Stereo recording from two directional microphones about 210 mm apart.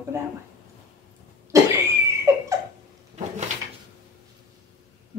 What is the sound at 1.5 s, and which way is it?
Cough, 15° right (ahead or behind).